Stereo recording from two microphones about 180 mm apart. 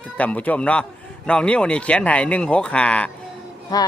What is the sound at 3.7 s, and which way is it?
Speech, 20° left (ahead or behind).